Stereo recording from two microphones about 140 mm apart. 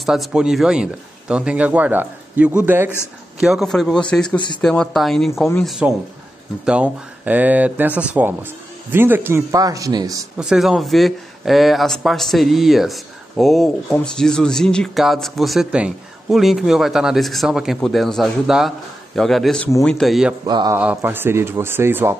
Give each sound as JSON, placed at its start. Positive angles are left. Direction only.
{"t": 0.0, "sound": "speech", "side_deg": 0}
{"t": 3.3, "sound": "speech", "side_deg": -5}
{"t": 10.3, "sound": "speech", "side_deg": -5}
{"t": 20.4, "sound": "speech", "side_deg": -30}
{"t": 20.7, "sound": "speech", "side_deg": -15}